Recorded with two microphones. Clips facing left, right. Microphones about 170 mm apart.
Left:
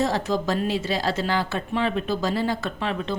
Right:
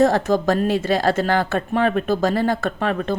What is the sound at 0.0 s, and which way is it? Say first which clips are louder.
A woman's voice: right 7 dB; 50° right (ahead or behind).